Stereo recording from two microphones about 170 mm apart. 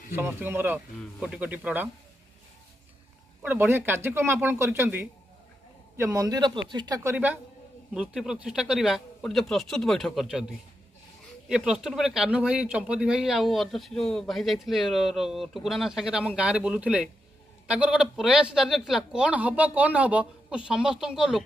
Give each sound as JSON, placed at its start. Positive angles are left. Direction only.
{"t": 0.1, "sound": "speech", "side_deg": -15}
{"t": 3.4, "sound": "speech", "side_deg": -15}
{"t": 11.4, "sound": "speech", "side_deg": -5}